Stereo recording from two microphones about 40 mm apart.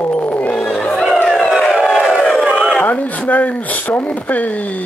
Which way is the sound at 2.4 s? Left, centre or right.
Centre.